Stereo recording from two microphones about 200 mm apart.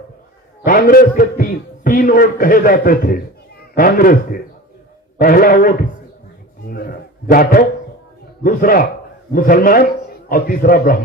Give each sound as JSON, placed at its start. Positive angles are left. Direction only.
{"t": 0.6, "sound": "a man's voice", "side_deg": 45}